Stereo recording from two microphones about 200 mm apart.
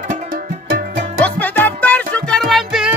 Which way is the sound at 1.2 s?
10° left (ahead or behind).